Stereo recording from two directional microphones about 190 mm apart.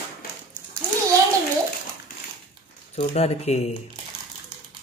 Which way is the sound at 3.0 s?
35° left (ahead or behind).